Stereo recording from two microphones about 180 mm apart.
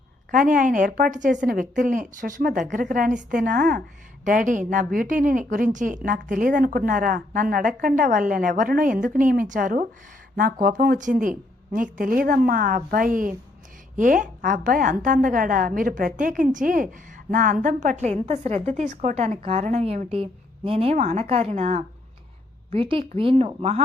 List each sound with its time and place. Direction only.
0.3 s a woman's voice: 50° right (ahead or behind); by 23.8 s 35° right (ahead or behind)